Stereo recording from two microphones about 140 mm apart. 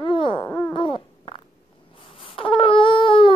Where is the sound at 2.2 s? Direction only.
40° left (ahead or behind).